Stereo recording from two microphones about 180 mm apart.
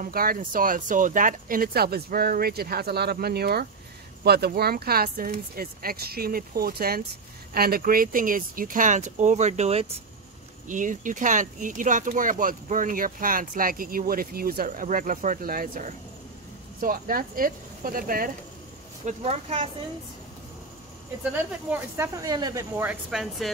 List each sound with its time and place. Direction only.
0.0 s speech: 55° right (ahead or behind); by 9.9 s 35° right (ahead or behind)
10.7 s speech: 45° right (ahead or behind)
19.0 s a woman's voice: 35° right (ahead or behind)
21.6 s speech: 10° right (ahead or behind)